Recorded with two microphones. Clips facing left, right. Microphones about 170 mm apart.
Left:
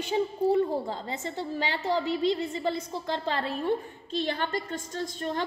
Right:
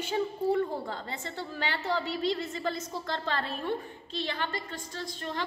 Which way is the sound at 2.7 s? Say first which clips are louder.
Left 3 dB; 30° left (ahead or behind).